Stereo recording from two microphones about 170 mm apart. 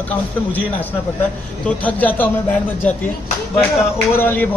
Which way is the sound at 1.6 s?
10° left (ahead or behind).